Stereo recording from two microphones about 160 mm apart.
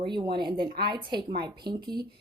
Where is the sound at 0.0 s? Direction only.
30° right (ahead or behind).